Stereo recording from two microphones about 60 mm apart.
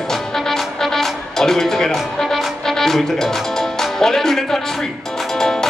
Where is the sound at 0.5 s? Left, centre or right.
Centre.